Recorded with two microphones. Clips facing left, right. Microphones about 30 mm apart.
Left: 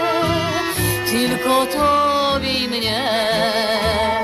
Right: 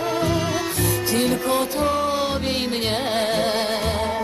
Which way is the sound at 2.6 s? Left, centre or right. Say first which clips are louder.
Left 3 dB; left.